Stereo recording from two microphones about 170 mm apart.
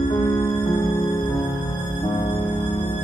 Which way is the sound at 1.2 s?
30° left (ahead or behind).